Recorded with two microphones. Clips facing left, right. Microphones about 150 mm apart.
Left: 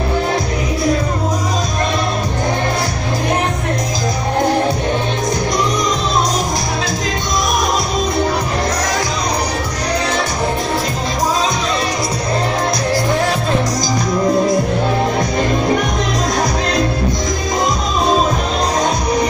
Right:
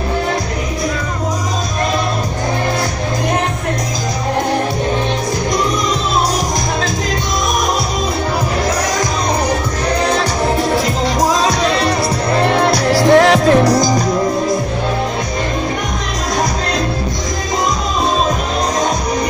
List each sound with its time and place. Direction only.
12.4 s music: 70° right (ahead or behind)